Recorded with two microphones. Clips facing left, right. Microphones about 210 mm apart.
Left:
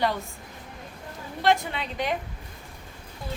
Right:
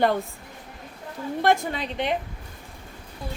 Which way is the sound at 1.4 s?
50° right (ahead or behind).